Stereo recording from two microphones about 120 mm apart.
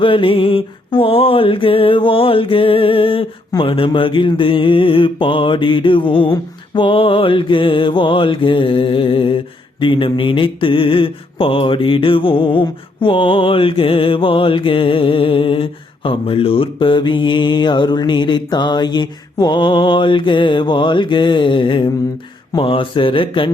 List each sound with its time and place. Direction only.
0.0 s mantra: 45° left (ahead or behind)